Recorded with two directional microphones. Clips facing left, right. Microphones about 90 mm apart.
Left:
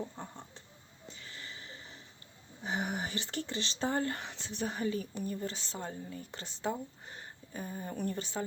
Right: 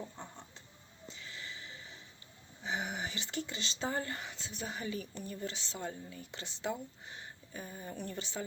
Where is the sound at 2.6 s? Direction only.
50° left (ahead or behind).